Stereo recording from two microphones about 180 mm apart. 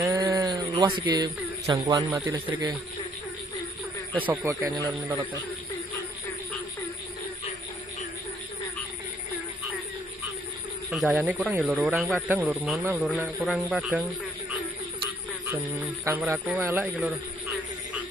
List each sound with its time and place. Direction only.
0.1 s sheep: 20° right (ahead or behind)
0.7 s speech: 25° right (ahead or behind)
2.1 s speech: 10° right (ahead or behind)
4.3 s speech: 20° right (ahead or behind)
10.9 s a man's voice: centre (ahead or behind)
15.8 s speech: 10° right (ahead or behind)